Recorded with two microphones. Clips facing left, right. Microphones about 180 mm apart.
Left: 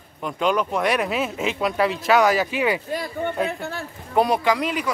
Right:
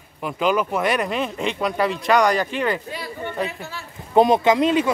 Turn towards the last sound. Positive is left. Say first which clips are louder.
# right 5 dB
turn(degrees=-25)  # may be behind; listen again after turning